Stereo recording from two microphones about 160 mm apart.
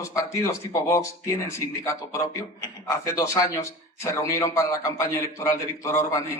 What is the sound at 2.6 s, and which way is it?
A man's voice, 20° left (ahead or behind).